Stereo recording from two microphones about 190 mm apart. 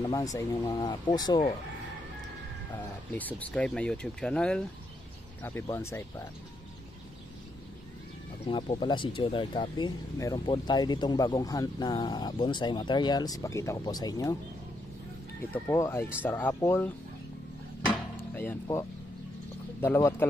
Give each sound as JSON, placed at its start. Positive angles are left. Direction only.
{"t": 0.0, "sound": "speech", "side_deg": 20}
{"t": 3.1, "sound": "speech", "side_deg": 10}
{"t": 8.5, "sound": "speech", "side_deg": 25}
{"t": 15.5, "sound": "speech", "side_deg": 15}
{"t": 18.1, "sound": "a sound", "side_deg": 10}
{"t": 19.8, "sound": "speech", "side_deg": 10}